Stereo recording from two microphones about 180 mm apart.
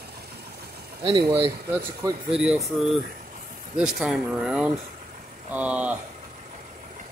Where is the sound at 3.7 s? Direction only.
5° right (ahead or behind).